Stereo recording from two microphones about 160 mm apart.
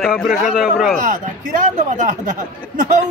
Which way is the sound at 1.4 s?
55° right (ahead or behind).